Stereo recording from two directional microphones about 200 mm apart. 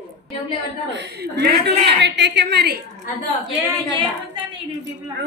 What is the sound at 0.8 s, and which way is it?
A woman's voice, 60° right (ahead or behind).